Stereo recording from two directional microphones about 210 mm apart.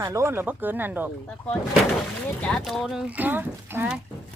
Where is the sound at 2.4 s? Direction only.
Centre (ahead or behind).